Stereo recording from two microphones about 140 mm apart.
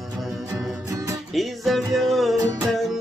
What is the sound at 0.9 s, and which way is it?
Music, 20° right (ahead or behind).